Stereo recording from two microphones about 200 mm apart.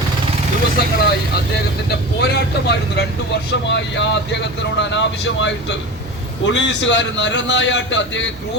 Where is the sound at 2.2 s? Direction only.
55° left (ahead or behind).